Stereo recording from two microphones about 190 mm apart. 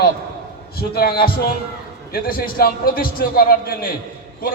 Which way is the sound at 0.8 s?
55° left (ahead or behind).